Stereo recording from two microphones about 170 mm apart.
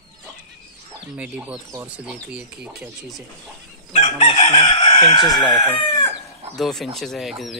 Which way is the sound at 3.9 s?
40° left (ahead or behind).